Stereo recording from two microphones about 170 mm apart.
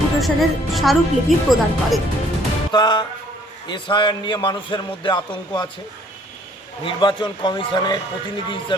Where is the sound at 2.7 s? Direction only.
25° left (ahead or behind).